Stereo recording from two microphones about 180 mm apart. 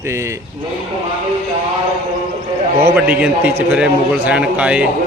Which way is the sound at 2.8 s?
5° right (ahead or behind).